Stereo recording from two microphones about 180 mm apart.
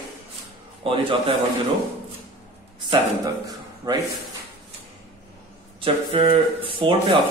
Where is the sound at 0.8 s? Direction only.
30° right (ahead or behind).